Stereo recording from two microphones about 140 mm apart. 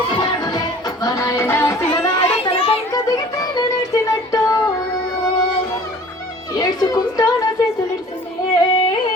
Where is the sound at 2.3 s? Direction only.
45° left (ahead or behind).